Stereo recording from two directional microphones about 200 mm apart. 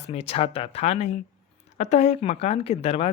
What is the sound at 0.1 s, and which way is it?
A woman's voice, 30° left (ahead or behind).